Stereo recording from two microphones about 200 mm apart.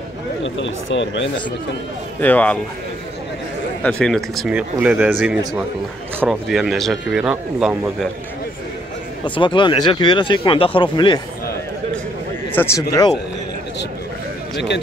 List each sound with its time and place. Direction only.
0.4 s speech: 70° left (ahead or behind)
2.1 s speech: 10° left (ahead or behind)
3.8 s speech: 5° left (ahead or behind)
9.2 s speech: 25° left (ahead or behind)
12.5 s speech: 15° left (ahead or behind)